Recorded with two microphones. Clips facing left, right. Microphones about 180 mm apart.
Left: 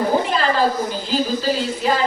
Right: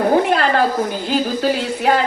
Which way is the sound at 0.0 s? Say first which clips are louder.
Right 4 dB; 60° right (ahead or behind).